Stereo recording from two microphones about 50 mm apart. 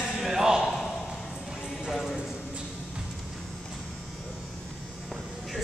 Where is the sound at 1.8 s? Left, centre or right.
Centre.